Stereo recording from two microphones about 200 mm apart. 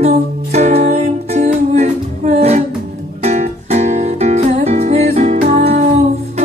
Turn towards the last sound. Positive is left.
turn(degrees=-35)  # may be behind; listen again after turning